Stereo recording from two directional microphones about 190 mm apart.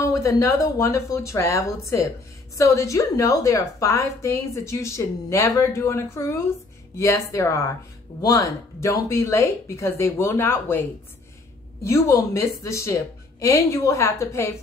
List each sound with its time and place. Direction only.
0.0 s a woman's voice: 15° left (ahead or behind)